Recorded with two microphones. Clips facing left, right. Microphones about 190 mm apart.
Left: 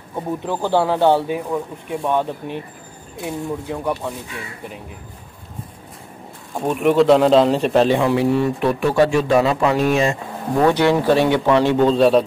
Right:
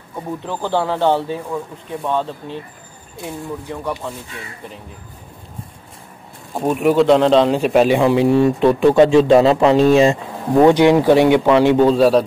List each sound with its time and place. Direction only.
0.4 s speech: 10° left (ahead or behind)
3.7 s speech: 10° left (ahead or behind)
6.5 s a man's voice: 5° right (ahead or behind)